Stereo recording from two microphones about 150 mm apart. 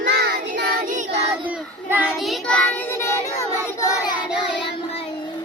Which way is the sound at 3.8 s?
20° left (ahead or behind).